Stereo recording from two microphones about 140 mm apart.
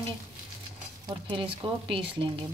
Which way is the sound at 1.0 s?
35° right (ahead or behind).